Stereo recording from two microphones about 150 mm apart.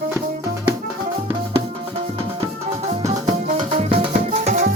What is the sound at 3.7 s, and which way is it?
Music, 35° right (ahead or behind).